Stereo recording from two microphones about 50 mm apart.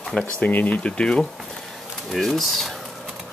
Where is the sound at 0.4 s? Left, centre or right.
Left.